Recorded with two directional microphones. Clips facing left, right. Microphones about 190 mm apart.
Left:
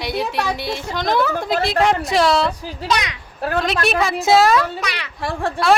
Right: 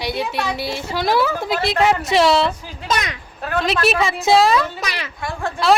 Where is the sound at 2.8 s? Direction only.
45° right (ahead or behind).